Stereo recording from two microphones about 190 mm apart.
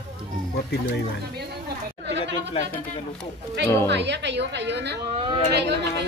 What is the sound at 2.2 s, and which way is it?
Speech, 35° left (ahead or behind).